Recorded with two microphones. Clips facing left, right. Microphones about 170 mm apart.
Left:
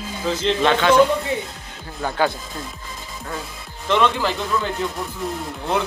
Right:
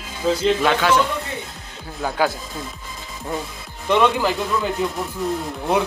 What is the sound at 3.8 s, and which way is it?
Speech, 15° right (ahead or behind).